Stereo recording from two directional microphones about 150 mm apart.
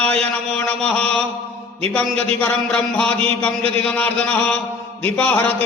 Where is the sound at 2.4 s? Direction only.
5° left (ahead or behind).